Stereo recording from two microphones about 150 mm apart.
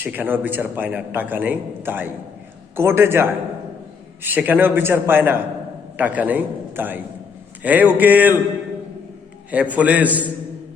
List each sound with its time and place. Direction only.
0.0 s a man's voice: 10° right (ahead or behind)
9.5 s a man's voice: 10° right (ahead or behind)